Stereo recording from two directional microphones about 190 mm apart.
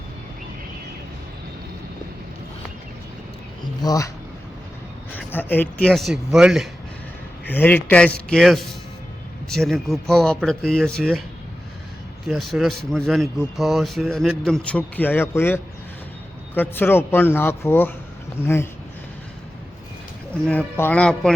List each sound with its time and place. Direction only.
3.8 s speech: 15° left (ahead or behind)
5.1 s speech: 10° left (ahead or behind)
7.4 s speech: 10° left (ahead or behind)
12.3 s speech: centre (ahead or behind)
20.3 s speech: 5° left (ahead or behind)